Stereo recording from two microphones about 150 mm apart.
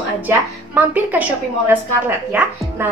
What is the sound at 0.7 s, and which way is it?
A woman's voice, 10° right (ahead or behind).